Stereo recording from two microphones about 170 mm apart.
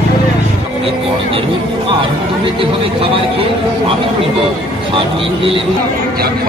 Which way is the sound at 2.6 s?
30° right (ahead or behind).